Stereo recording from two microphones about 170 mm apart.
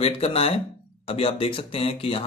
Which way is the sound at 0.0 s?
35° left (ahead or behind).